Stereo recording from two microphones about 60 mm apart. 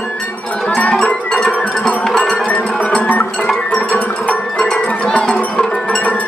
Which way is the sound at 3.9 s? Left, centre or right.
Left.